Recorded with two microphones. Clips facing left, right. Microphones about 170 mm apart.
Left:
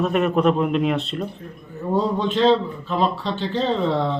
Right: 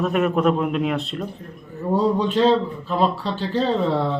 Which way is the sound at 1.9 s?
10° right (ahead or behind).